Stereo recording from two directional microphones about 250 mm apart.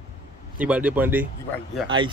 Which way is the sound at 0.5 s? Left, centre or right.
Centre.